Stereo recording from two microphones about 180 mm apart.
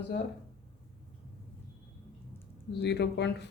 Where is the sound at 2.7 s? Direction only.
70° left (ahead or behind).